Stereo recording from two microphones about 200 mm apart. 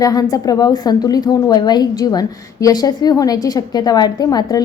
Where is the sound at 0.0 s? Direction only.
20° left (ahead or behind).